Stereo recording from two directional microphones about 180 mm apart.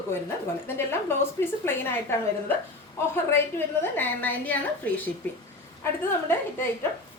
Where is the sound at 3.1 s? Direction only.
15° left (ahead or behind).